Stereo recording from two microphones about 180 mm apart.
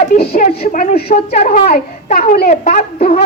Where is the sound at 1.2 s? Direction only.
45° left (ahead or behind).